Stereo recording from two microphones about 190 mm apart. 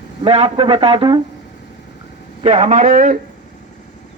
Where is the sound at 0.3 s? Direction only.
30° right (ahead or behind).